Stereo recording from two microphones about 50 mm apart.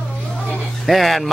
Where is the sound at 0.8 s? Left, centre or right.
Centre.